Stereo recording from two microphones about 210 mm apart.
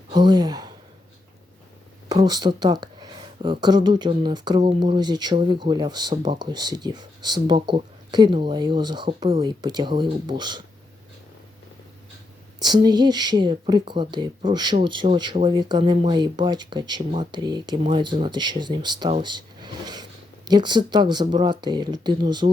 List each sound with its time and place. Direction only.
0.1 s speech: 20° right (ahead or behind)
2.0 s speech: 20° right (ahead or behind)
12.5 s speech: 20° right (ahead or behind)